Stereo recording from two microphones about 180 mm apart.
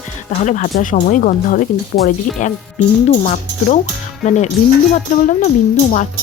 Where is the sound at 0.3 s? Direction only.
45° left (ahead or behind).